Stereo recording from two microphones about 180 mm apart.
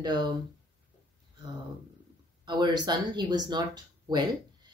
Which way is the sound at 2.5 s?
25° right (ahead or behind).